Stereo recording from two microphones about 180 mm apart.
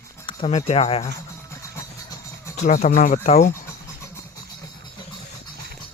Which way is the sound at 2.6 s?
40° left (ahead or behind).